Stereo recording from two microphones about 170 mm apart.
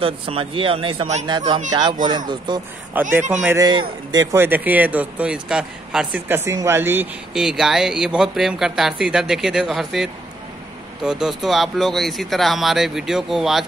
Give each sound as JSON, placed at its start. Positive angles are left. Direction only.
{"t": 0.0, "sound": "speech", "side_deg": -35}
{"t": 1.7, "sound": "speech", "side_deg": -25}
{"t": 2.9, "sound": "speech", "side_deg": -10}
{"t": 11.1, "sound": "speech", "side_deg": -5}